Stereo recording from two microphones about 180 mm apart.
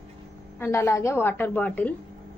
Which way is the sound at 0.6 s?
15° left (ahead or behind).